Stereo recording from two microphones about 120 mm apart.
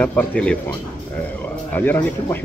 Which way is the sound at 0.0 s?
15° left (ahead or behind).